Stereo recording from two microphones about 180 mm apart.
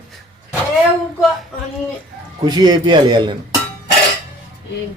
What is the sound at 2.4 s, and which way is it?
Speech, 20° right (ahead or behind).